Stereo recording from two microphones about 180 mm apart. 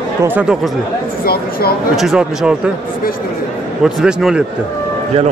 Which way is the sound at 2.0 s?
5° right (ahead or behind).